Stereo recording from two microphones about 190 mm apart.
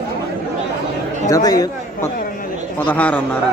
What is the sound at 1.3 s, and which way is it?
Speech, 20° left (ahead or behind).